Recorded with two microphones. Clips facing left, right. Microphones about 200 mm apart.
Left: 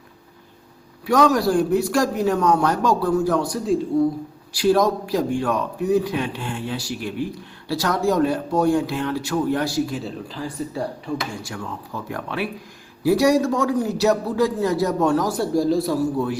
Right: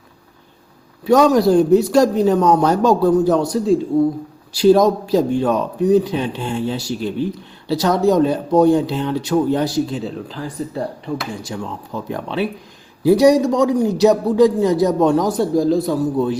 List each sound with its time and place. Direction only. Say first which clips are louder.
1.0 s speech: right 5 dB; 20° right (ahead or behind)
3.5 s a man's voice: right 5 dB; centre (ahead or behind)
4.5 s speech: right 6 dB; 25° right (ahead or behind)
11.4 s speech: right 4 dB; 20° right (ahead or behind)
15.7 s a man's voice: right 3 dB; centre (ahead or behind)
16.1 s speech: right 5 dB; 20° right (ahead or behind)